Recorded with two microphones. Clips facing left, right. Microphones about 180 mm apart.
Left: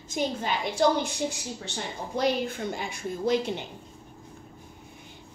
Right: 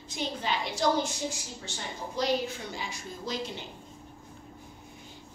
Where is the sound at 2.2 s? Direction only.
55° left (ahead or behind).